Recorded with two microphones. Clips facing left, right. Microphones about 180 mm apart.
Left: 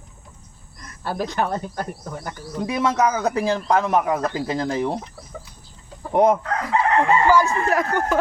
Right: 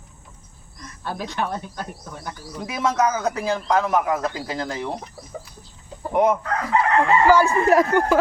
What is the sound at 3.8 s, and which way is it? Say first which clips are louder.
Speech: left 1 dB; 25° left (ahead or behind).